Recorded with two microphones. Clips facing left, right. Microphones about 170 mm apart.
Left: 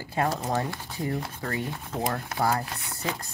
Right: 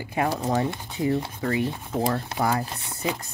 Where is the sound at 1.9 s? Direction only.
30° right (ahead or behind).